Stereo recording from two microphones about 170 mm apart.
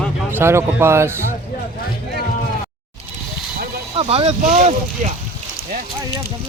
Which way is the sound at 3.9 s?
35° right (ahead or behind).